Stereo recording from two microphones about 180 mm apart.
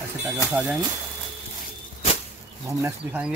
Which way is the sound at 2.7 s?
15° right (ahead or behind).